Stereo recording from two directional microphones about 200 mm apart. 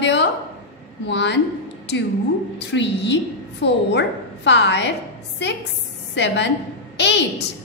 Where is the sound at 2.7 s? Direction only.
60° left (ahead or behind).